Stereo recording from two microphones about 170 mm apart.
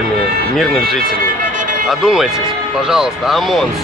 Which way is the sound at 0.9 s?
60° right (ahead or behind).